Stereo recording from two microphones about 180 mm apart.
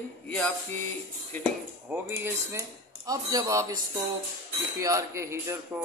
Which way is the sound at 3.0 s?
20° right (ahead or behind).